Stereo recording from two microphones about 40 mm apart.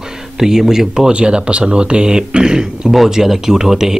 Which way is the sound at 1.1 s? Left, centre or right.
Right.